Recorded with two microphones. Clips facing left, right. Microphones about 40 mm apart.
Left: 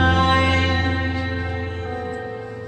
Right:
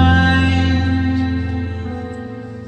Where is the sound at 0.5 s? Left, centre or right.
Left.